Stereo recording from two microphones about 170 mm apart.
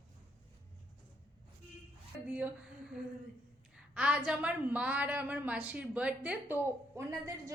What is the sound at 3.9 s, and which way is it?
A woman's voice, 5° right (ahead or behind).